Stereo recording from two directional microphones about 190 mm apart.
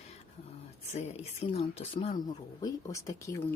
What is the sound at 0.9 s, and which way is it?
Speech, 35° left (ahead or behind).